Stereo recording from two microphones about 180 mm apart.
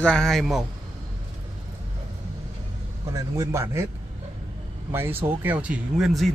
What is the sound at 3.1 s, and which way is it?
Speech, 15° right (ahead or behind).